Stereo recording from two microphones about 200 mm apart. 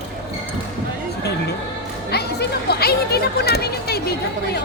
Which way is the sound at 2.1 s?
55° left (ahead or behind).